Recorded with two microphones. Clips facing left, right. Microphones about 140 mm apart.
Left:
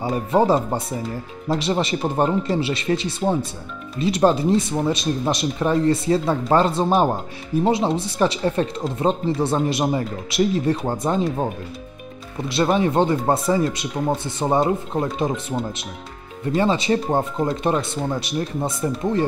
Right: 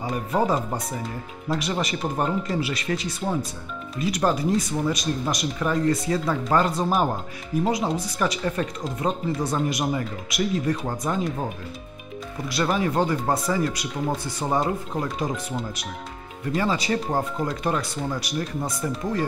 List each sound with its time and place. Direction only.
0.1 s speech: 30° left (ahead or behind)
12.4 s speech: 25° left (ahead or behind)